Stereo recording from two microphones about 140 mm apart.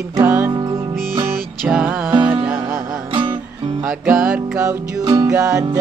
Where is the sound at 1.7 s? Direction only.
5° right (ahead or behind).